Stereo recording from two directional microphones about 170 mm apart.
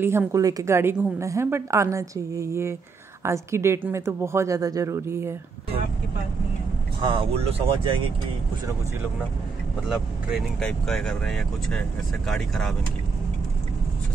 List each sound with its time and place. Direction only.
0.0 s a woman's voice: 15° right (ahead or behind)
7.0 s speech: 30° right (ahead or behind)
9.8 s speech: centre (ahead or behind)